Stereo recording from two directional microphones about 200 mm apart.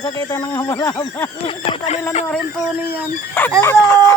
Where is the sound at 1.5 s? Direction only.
30° left (ahead or behind).